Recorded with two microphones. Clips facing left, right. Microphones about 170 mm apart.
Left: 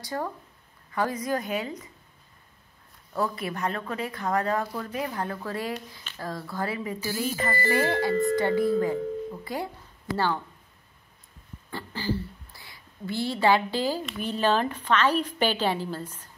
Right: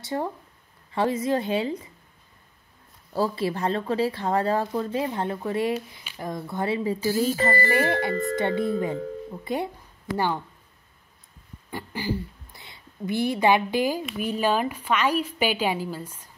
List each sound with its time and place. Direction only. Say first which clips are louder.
0.0 s speech: right 3 dB; 25° right (ahead or behind)
3.1 s a woman's voice: right 4 dB; 30° right (ahead or behind)
11.7 s a woman's voice: right 1 dB; 15° right (ahead or behind)